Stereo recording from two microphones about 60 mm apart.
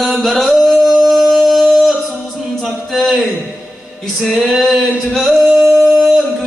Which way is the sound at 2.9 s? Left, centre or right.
Centre.